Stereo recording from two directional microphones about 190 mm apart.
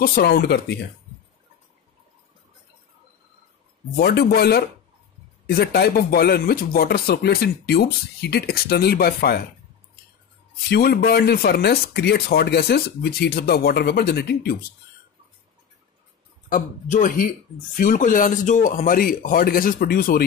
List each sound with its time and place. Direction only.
0.0 s speech: 55° left (ahead or behind)
3.9 s speech: 55° left (ahead or behind)
10.7 s speech: 55° left (ahead or behind)
16.4 s speech: 45° left (ahead or behind)